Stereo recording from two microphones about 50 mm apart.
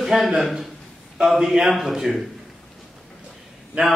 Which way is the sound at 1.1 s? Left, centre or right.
Centre.